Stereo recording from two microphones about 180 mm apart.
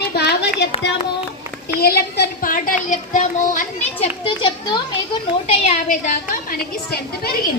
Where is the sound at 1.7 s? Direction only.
60° left (ahead or behind); by 4.5 s 30° left (ahead or behind).